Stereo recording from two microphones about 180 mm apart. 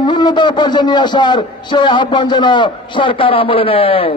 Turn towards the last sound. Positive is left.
turn(degrees=30)  # may be behind; listen again after turning